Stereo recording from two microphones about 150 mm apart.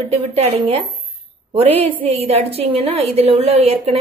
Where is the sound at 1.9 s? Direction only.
40° right (ahead or behind).